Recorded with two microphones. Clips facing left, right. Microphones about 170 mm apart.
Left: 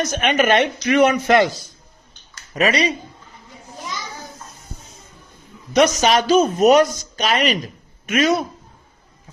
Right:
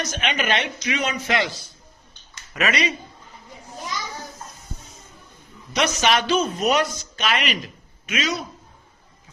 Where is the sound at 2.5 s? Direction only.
35° left (ahead or behind).